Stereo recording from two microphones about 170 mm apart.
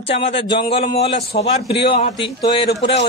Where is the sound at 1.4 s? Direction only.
90° left.